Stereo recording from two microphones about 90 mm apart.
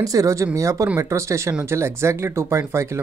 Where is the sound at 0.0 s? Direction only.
40° right (ahead or behind).